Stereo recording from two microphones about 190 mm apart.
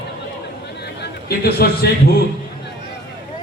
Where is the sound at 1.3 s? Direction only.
55° left (ahead or behind).